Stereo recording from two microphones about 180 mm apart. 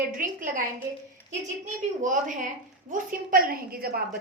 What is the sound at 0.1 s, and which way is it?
A woman's voice, 50° right (ahead or behind).